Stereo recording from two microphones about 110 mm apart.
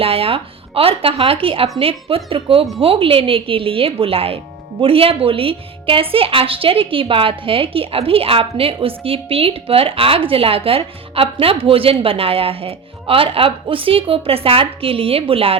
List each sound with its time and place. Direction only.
0.0 s a woman's voice: 60° right (ahead or behind)